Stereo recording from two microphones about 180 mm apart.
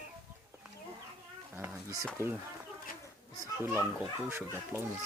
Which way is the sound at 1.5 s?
10° right (ahead or behind).